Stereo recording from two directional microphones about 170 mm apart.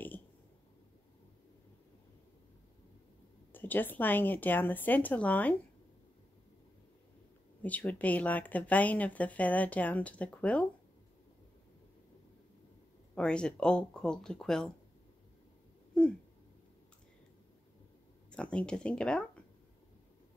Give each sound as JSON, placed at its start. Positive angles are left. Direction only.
{"t": 3.5, "sound": "speech", "side_deg": 10}
{"t": 7.6, "sound": "speech", "side_deg": 10}
{"t": 13.1, "sound": "speech", "side_deg": 5}
{"t": 15.9, "sound": "a sound", "side_deg": 5}
{"t": 18.3, "sound": "speech", "side_deg": 5}